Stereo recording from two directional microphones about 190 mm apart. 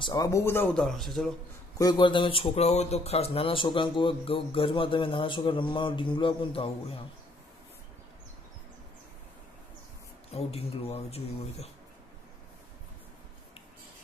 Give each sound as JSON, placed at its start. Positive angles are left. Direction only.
{"t": 0.0, "sound": "speech", "side_deg": 20}
{"t": 1.8, "sound": "speech", "side_deg": 25}
{"t": 10.3, "sound": "speech", "side_deg": 30}